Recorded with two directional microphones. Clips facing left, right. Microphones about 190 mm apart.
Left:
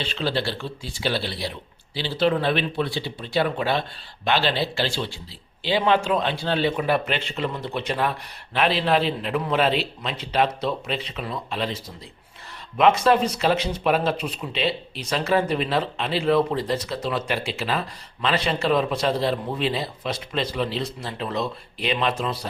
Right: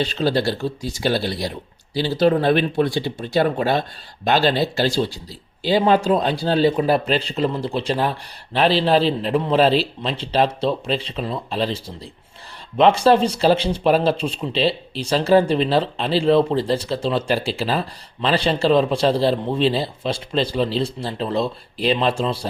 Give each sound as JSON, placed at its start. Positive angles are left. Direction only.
{"t": 0.0, "sound": "speech", "side_deg": -40}